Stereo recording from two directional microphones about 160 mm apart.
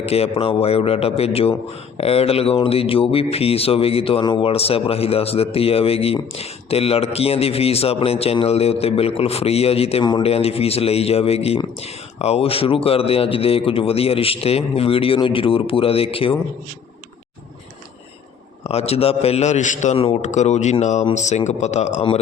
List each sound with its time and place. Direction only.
0.0 s a man's voice: 40° left (ahead or behind)
18.6 s a man's voice: 40° left (ahead or behind)